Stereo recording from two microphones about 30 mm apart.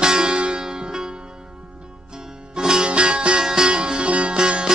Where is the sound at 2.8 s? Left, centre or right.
Right.